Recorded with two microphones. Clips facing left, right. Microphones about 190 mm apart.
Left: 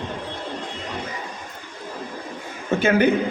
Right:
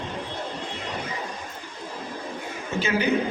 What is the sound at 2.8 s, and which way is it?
Speech, 55° left (ahead or behind).